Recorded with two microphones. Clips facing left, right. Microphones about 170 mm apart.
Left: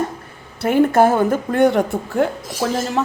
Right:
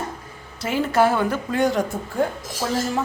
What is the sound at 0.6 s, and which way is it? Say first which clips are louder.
A woman's voice: left 6 dB; 55° left (ahead or behind).